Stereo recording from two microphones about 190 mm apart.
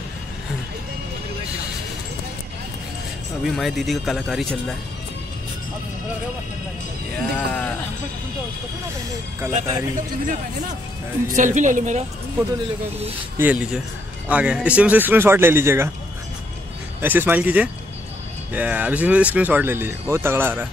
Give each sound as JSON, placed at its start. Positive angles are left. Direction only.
{"t": 3.4, "sound": "a man's voice", "side_deg": 0}
{"t": 7.2, "sound": "speech", "side_deg": 5}
{"t": 9.5, "sound": "a woman's voice", "side_deg": -40}
{"t": 13.4, "sound": "speech", "side_deg": -5}
{"t": 17.0, "sound": "speech", "side_deg": -10}